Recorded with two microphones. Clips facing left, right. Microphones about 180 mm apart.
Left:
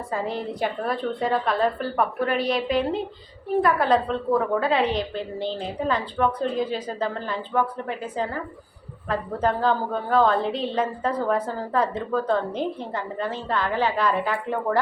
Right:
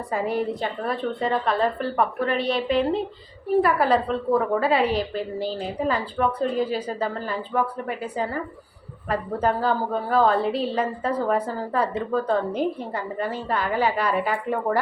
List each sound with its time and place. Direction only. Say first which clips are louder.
0.1 s a woman's voice: right 4 dB; 15° right (ahead or behind)
0.6 s a woman's voice: left 1 dB; centre (ahead or behind)